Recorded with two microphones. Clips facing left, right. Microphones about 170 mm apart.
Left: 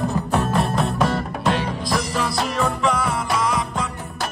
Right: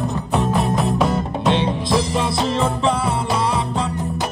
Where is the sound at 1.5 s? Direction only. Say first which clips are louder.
Right 4 dB; 25° right (ahead or behind).